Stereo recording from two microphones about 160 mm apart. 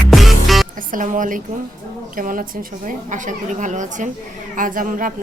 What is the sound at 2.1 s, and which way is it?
A woman's voice, 60° right (ahead or behind).